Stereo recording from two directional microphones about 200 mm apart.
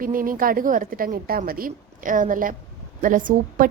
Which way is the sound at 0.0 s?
45° right (ahead or behind).